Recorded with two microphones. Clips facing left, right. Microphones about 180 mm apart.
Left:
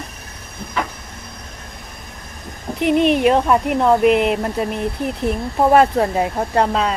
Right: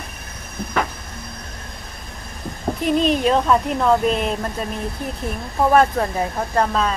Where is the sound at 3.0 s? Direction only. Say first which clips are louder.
Left 4 dB; 65° left (ahead or behind).